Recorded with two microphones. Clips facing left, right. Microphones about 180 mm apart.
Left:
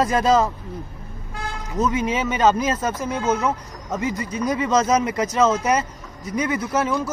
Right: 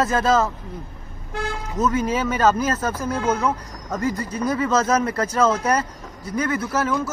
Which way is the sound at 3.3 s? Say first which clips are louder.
Left 1 dB; 10° left (ahead or behind).